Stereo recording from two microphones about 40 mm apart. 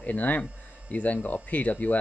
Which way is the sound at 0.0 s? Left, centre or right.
Left.